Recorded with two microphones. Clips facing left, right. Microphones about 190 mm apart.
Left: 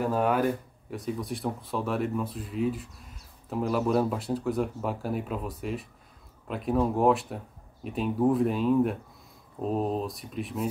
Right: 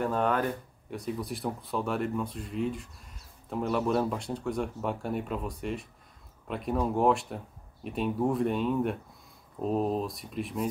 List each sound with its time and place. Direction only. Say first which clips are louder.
0.0 s speech: left 2 dB; 5° left (ahead or behind)